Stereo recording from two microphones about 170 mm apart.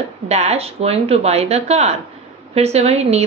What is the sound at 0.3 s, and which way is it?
A woman's voice, 40° right (ahead or behind).